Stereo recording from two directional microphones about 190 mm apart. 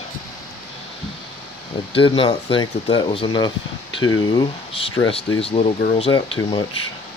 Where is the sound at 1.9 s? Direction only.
25° left (ahead or behind).